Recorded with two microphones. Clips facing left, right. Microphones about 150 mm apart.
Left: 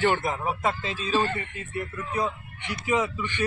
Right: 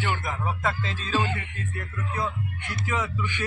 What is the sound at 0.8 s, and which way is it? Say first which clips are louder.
A man's voice: left 2 dB; 10° left (ahead or behind).